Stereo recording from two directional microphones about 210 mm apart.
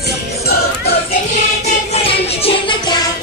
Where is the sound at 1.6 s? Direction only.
30° left (ahead or behind).